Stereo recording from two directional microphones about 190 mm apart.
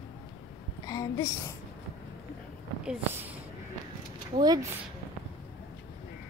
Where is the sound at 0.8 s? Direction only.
20° left (ahead or behind).